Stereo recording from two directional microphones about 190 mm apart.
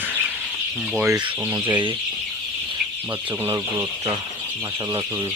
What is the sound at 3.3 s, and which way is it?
Speech, 10° right (ahead or behind).